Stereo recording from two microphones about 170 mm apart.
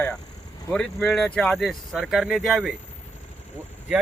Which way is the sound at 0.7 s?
5° left (ahead or behind).